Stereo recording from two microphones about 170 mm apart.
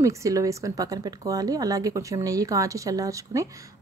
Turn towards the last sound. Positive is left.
turn(degrees=-20)  # may be behind; listen again after turning